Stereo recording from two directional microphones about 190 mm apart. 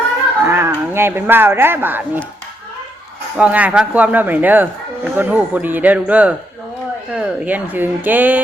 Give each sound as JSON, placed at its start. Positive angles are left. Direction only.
{"t": 0.4, "sound": "speech", "side_deg": -15}
{"t": 3.3, "sound": "speech", "side_deg": -5}